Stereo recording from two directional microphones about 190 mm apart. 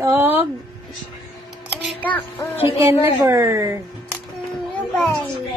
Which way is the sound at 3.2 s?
15° right (ahead or behind).